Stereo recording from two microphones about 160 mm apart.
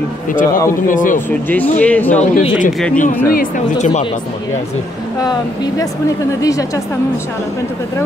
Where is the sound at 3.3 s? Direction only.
55° left (ahead or behind).